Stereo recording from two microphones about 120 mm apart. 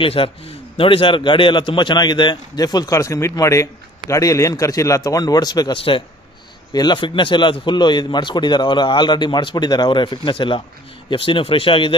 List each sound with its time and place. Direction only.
0.0 s a man's voice: 50° left (ahead or behind)
5.8 s speech: 50° left (ahead or behind)
6.7 s a man's voice: 35° left (ahead or behind)